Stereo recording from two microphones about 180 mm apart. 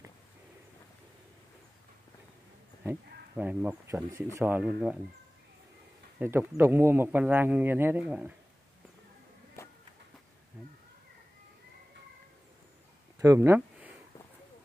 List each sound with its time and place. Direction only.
2.8 s speech: 10° right (ahead or behind)
6.1 s speech: 10° right (ahead or behind)
13.2 s a sound: 15° right (ahead or behind)